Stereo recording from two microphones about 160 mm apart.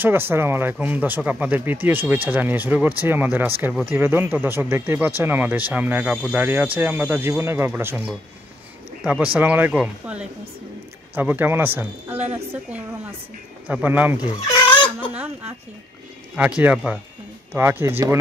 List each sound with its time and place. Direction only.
0.0 s speech: 15° right (ahead or behind)
14.3 s chicken: 25° left (ahead or behind)
15.1 s a sound: 10° right (ahead or behind)
16.3 s speech: 10° right (ahead or behind)